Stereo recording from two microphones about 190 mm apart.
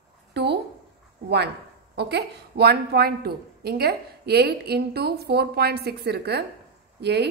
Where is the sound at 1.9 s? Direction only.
60° right (ahead or behind).